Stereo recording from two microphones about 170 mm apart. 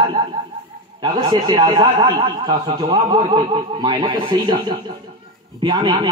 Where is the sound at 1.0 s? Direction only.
25° right (ahead or behind).